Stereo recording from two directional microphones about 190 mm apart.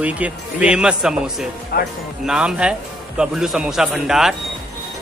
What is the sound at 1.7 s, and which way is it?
Speech, 50° left (ahead or behind).